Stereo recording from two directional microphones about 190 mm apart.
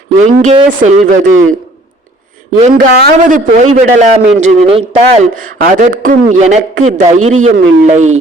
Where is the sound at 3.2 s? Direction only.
45° right (ahead or behind).